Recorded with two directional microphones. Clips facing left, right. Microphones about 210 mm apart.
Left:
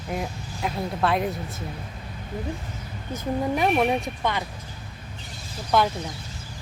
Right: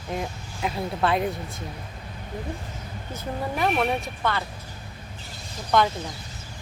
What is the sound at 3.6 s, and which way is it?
Speech, 20° left (ahead or behind).